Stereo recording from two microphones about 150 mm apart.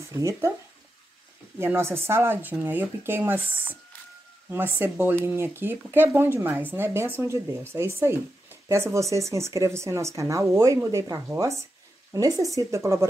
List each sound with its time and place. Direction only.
0.1 s speech: 20° right (ahead or behind)
1.6 s speech: 15° right (ahead or behind)